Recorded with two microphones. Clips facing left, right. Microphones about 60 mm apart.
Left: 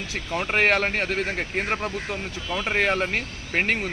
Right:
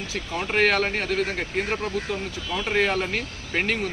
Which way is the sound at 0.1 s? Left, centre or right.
Left.